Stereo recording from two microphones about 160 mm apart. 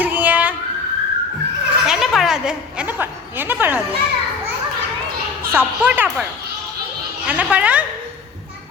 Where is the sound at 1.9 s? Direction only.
Centre (ahead or behind).